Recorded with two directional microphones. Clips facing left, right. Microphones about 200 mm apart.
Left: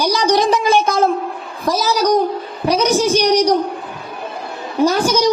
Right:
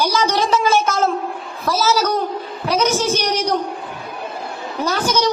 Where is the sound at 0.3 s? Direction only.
15° left (ahead or behind).